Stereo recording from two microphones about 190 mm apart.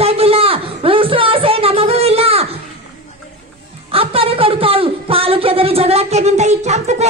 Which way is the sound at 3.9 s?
30° right (ahead or behind).